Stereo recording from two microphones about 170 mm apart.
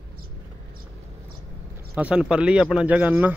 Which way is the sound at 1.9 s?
5° right (ahead or behind).